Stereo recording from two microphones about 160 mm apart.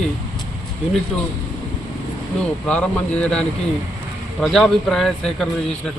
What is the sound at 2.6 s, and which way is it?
A man's voice, 10° left (ahead or behind).